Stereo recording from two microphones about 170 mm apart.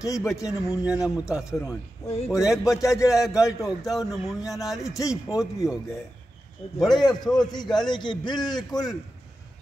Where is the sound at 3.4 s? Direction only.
20° left (ahead or behind).